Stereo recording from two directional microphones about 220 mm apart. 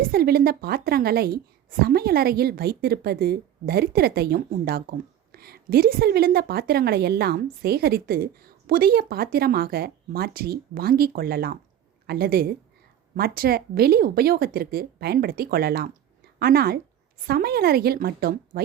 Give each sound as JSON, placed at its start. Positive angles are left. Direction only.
{"t": 0.0, "sound": "a woman's voice", "side_deg": -45}